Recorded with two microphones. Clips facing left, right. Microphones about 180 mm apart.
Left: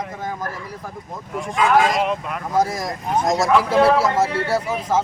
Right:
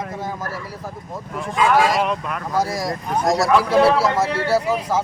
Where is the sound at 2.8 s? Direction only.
20° left (ahead or behind).